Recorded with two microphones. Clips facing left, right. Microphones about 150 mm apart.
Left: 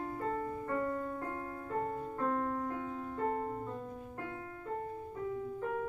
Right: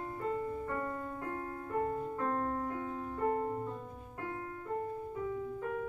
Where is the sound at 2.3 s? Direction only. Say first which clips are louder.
Even; 35° right (ahead or behind).